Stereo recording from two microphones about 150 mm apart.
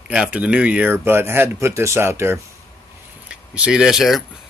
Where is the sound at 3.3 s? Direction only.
5° right (ahead or behind).